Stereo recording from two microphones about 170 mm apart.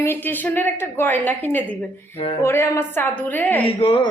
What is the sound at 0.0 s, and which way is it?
A woman's voice, 10° left (ahead or behind).